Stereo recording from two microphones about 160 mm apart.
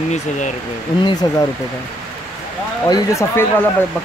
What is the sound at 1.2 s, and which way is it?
Speech, 30° left (ahead or behind).